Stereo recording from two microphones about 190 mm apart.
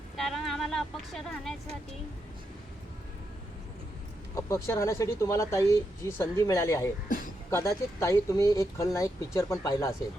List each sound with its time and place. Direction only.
0.2 s vehicle: centre (ahead or behind)
4.4 s speech: 15° left (ahead or behind)